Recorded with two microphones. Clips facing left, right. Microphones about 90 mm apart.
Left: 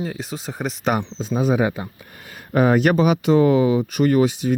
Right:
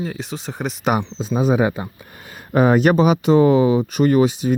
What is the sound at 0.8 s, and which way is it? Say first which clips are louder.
Speech: right 2 dB; 15° right (ahead or behind).